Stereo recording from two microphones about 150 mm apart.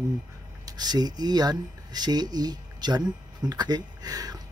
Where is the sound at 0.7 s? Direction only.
25° right (ahead or behind).